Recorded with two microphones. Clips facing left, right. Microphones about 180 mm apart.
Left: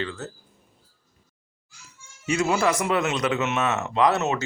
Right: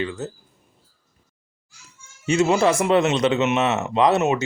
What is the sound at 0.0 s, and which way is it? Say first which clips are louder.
Speech: right 4 dB; 15° right (ahead or behind).